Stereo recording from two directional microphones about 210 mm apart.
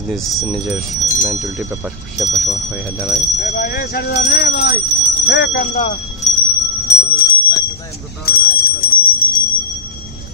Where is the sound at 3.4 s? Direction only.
45° left (ahead or behind).